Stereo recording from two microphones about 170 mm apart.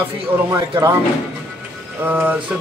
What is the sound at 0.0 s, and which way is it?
Speech, 15° right (ahead or behind).